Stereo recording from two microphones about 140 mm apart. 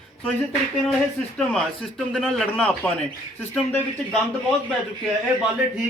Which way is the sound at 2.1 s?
Centre (ahead or behind).